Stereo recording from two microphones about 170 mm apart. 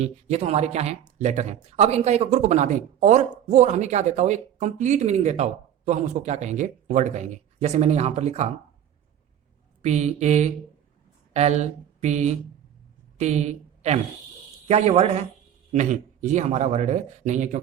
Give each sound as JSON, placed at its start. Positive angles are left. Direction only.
{"t": 0.0, "sound": "speech", "side_deg": -40}
{"t": 9.8, "sound": "a woman's voice", "side_deg": -40}